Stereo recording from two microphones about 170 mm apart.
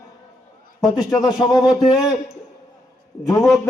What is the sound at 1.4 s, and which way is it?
Speech, centre (ahead or behind).